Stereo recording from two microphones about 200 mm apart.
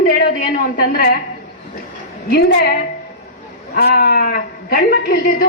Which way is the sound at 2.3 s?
55° left (ahead or behind).